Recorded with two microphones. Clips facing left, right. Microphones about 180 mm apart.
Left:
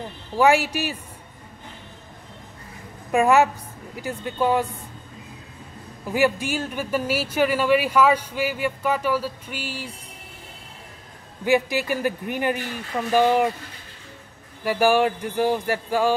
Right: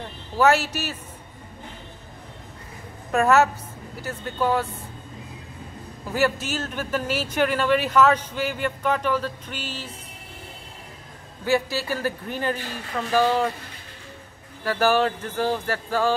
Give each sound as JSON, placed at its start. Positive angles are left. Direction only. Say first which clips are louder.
{"t": 0.4, "sound": "speech", "louder": "left 1 dB", "side_deg": 15}
{"t": 3.1, "sound": "a woman's voice", "louder": "left 1 dB", "side_deg": 15}
{"t": 6.1, "sound": "speech", "louder": "left 2 dB", "side_deg": 15}
{"t": 11.4, "sound": "speech", "louder": "left 2 dB", "side_deg": 15}
{"t": 14.6, "sound": "speech", "louder": "left 2 dB", "side_deg": 15}